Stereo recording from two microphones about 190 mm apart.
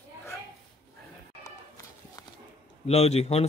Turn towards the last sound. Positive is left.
turn(degrees=30)  # may be behind; listen again after turning